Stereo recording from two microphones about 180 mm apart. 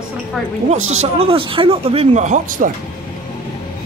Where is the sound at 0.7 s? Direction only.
40° right (ahead or behind).